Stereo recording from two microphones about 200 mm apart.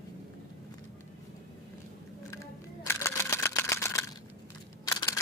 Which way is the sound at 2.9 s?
15° left (ahead or behind).